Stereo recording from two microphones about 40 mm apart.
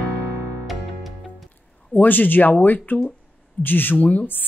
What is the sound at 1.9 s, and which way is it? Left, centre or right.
Speech, left.